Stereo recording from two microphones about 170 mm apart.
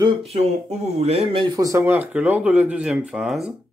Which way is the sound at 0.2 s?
35° right (ahead or behind).